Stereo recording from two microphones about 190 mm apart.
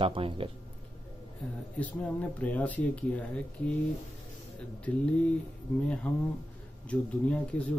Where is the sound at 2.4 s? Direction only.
10° left (ahead or behind).